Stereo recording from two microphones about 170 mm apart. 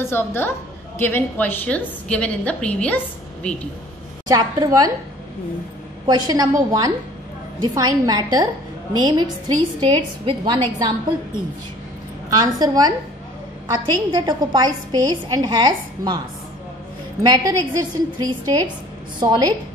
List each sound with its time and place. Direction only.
0.0 s a woman's voice: 15° left (ahead or behind)
4.3 s a woman's voice: 20° right (ahead or behind)
6.0 s a woman's voice: 25° right (ahead or behind)
12.3 s a woman's voice: 25° right (ahead or behind)
17.2 s a woman's voice: 25° right (ahead or behind)